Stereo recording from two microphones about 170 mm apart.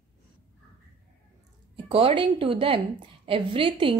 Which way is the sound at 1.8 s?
35° right (ahead or behind).